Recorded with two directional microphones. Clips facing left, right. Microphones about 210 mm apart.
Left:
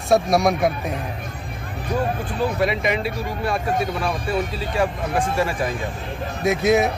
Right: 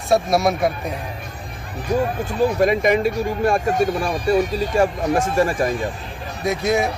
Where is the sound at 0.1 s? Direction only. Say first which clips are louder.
Even; centre (ahead or behind).